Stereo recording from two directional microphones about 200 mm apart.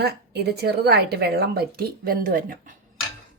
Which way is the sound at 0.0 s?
55° right (ahead or behind).